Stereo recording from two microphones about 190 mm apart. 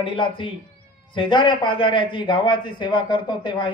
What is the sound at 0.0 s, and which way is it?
A woman's voice, 25° left (ahead or behind).